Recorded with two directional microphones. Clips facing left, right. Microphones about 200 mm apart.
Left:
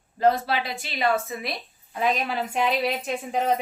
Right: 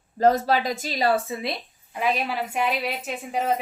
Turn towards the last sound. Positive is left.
turn(degrees=-5)  # may be behind; listen again after turning